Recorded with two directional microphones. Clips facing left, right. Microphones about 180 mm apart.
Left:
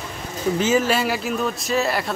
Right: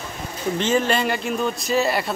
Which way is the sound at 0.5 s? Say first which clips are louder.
Left 1 dB; 5° left (ahead or behind).